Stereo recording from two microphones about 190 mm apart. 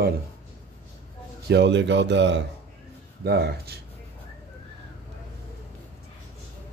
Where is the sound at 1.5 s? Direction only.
65° right (ahead or behind).